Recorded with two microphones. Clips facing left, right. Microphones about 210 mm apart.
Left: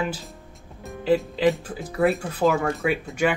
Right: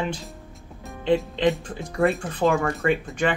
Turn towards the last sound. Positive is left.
turn(degrees=5)  # may be behind; listen again after turning